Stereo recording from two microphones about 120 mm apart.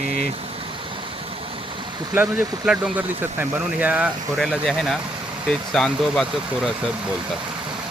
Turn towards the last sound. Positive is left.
turn(degrees=0)  # may be behind; listen again after turning